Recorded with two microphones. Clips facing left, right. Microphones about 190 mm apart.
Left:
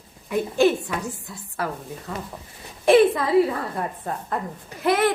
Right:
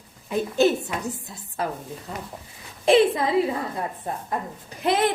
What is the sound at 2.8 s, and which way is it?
Speech, 20° right (ahead or behind).